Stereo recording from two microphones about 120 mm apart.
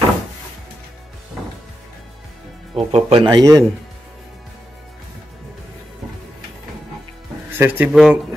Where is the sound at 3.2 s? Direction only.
30° right (ahead or behind).